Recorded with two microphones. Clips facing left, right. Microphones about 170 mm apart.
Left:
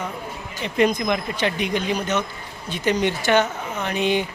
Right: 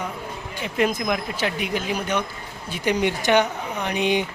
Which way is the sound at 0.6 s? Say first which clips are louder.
Left 3 dB; 5° right (ahead or behind).